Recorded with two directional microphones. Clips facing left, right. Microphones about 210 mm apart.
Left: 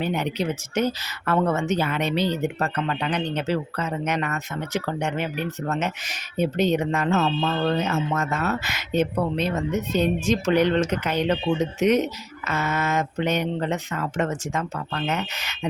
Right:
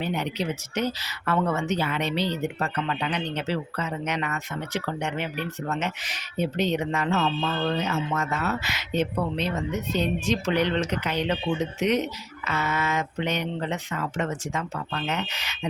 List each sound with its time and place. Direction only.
0.0 s speech: 50° left (ahead or behind)